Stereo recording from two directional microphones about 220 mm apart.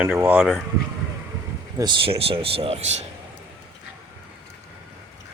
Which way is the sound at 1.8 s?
25° right (ahead or behind).